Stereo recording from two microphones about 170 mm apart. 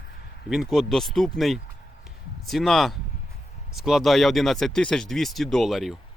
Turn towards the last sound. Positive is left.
turn(degrees=0)  # may be behind; listen again after turning